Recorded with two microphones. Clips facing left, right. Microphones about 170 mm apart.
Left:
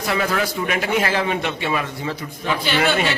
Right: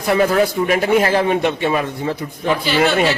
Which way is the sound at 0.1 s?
40° right (ahead or behind).